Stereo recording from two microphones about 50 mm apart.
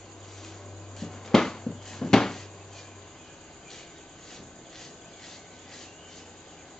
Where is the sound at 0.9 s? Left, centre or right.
Centre.